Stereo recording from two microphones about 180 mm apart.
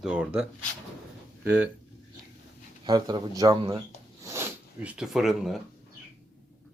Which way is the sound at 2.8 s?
20° right (ahead or behind).